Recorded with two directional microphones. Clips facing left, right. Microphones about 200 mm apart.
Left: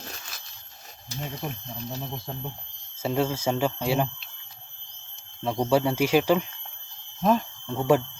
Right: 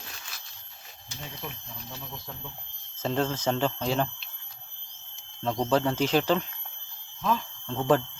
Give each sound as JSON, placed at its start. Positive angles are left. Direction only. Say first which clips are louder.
{"t": 0.0, "sound": "a sound", "louder": "left 5 dB", "side_deg": 45}
{"t": 1.1, "sound": "speech", "louder": "left 6 dB", "side_deg": 40}
{"t": 3.0, "sound": "speech", "louder": "left 2 dB", "side_deg": 10}
{"t": 5.4, "sound": "speech", "louder": "left 2 dB", "side_deg": 10}
{"t": 7.7, "sound": "speech", "louder": "left 2 dB", "side_deg": 10}